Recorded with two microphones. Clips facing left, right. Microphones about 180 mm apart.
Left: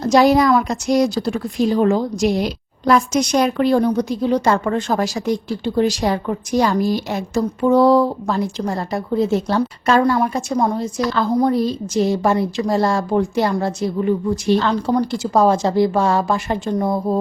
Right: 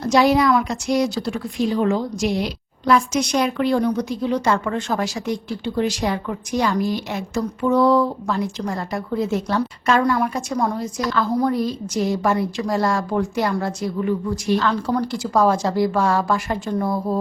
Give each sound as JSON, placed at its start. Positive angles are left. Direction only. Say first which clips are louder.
{"t": 0.0, "sound": "a woman's voice", "louder": "left 3 dB", "side_deg": 40}